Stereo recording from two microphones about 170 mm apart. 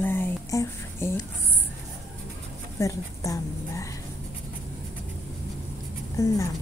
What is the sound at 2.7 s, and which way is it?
Speech, 20° left (ahead or behind).